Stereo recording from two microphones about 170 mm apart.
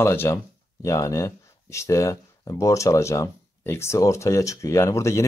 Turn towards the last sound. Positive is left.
turn(degrees=15)  # may be behind; listen again after turning